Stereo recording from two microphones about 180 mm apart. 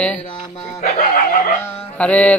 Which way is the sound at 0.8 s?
45° left (ahead or behind).